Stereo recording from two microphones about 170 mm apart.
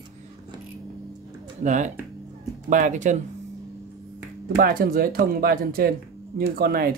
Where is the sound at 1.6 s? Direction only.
45° right (ahead or behind).